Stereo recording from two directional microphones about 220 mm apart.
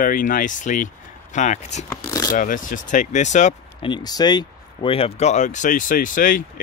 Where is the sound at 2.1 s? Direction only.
15° left (ahead or behind).